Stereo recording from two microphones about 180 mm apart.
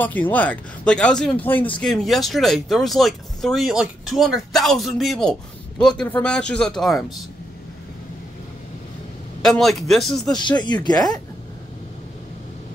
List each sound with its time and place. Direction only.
0.0 s speech: 10° left (ahead or behind)
9.4 s speech: centre (ahead or behind)
10.6 s speech: 25° left (ahead or behind)